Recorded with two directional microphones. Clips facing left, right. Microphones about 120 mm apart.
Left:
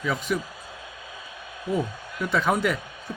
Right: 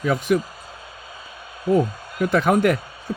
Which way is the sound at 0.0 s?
50° right (ahead or behind).